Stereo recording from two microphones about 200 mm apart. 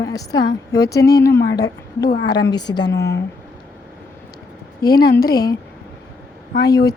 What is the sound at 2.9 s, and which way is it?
Speech, 60° left (ahead or behind).